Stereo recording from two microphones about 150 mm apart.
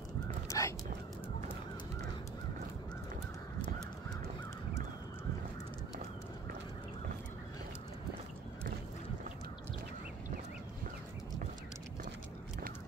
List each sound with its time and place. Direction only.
0.5 s whispering: 20° left (ahead or behind)